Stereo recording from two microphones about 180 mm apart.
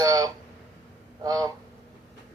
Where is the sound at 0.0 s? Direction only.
20° right (ahead or behind).